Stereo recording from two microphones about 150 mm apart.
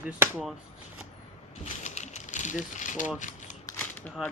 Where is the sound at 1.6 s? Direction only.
50° left (ahead or behind).